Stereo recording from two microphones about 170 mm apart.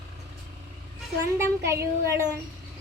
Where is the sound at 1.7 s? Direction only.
15° right (ahead or behind).